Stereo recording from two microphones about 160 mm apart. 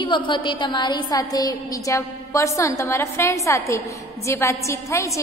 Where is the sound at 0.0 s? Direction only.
30° left (ahead or behind).